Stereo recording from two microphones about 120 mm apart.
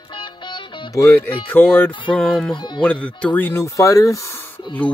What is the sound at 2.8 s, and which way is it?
Speech, 10° left (ahead or behind).